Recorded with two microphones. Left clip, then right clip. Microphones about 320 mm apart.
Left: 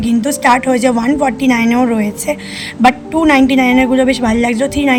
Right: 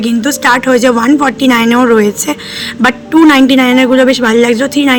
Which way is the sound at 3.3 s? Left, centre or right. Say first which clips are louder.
Right 3 dB; centre.